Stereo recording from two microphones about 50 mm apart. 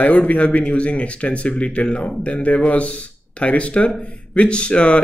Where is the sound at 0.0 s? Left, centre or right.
Left.